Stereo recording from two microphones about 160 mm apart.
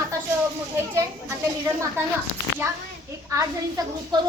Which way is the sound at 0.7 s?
20° right (ahead or behind).